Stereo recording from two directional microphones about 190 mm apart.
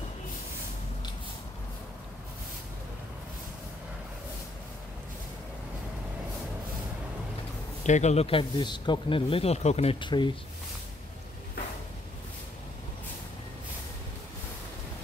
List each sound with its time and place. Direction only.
7.8 s speech: 40° left (ahead or behind)